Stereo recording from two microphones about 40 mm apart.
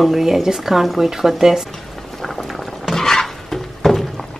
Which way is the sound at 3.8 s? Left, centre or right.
Centre.